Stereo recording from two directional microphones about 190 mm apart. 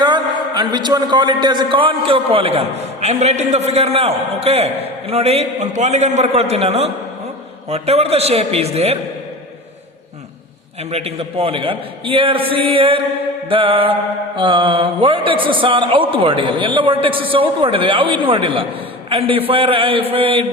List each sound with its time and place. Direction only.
0.0 s a man's voice: 25° right (ahead or behind)
10.9 s a man's voice: 30° right (ahead or behind)